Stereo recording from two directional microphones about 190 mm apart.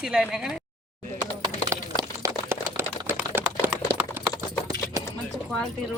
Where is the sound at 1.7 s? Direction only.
15° right (ahead or behind).